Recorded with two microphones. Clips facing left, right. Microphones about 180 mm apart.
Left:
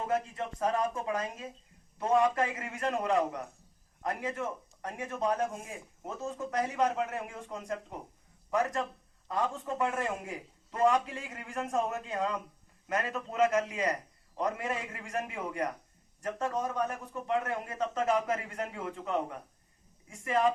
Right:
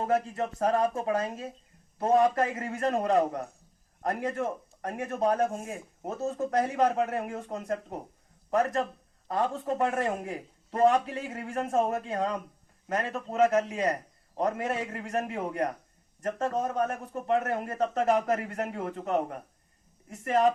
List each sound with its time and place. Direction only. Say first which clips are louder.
0.0 s a man's voice: right 5 dB; 45° right (ahead or behind)
8.4 s a man's voice: right 4 dB; 35° right (ahead or behind)